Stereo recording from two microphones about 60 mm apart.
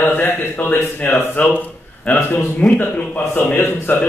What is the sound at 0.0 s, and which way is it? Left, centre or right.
Speech, left.